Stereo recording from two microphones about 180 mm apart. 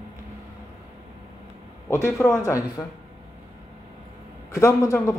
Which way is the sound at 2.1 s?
5° left (ahead or behind).